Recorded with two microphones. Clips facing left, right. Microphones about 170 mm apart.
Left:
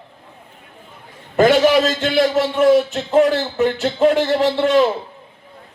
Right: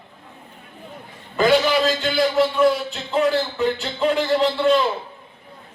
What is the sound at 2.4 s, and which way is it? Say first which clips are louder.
A man's voice: left 4 dB; 80° left.